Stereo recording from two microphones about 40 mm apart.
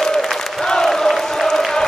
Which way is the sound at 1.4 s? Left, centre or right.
Centre.